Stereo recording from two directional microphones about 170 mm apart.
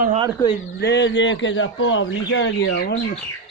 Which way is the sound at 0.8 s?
90° left.